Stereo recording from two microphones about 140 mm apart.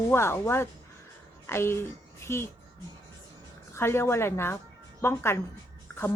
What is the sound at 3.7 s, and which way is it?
Speech, 20° left (ahead or behind).